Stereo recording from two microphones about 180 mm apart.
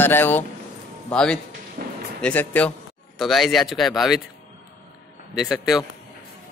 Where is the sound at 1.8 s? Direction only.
60° right (ahead or behind).